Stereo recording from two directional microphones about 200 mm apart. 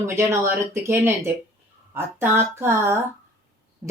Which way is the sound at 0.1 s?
15° right (ahead or behind).